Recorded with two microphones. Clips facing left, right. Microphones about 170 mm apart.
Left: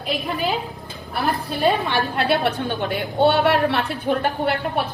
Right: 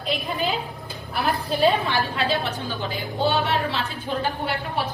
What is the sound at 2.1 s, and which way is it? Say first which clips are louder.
A woman's voice: left 5 dB; 65° left (ahead or behind).